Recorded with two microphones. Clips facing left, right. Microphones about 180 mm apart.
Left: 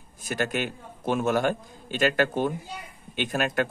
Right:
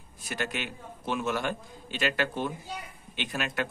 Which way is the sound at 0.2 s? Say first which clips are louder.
Left 6 dB; 45° left (ahead or behind).